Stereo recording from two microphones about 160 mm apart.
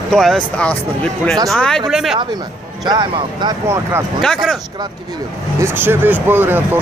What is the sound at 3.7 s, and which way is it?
Speech, 15° right (ahead or behind).